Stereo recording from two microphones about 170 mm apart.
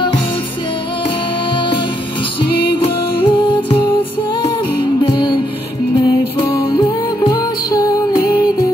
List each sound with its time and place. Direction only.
2.6 s music: 30° left (ahead or behind)
5.0 s music: 30° left (ahead or behind)
6.7 s music: 25° left (ahead or behind)